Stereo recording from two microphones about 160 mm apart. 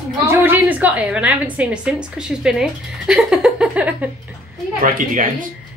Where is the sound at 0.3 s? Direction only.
10° right (ahead or behind).